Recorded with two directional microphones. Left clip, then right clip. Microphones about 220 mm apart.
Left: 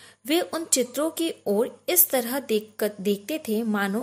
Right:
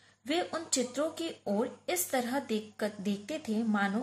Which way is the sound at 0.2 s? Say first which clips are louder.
Left 7 dB; 45° left (ahead or behind).